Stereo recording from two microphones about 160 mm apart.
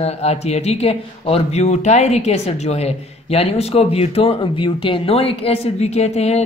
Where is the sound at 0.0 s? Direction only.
40° left (ahead or behind).